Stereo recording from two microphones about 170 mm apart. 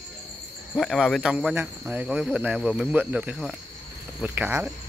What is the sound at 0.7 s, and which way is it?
Speech, 5° right (ahead or behind).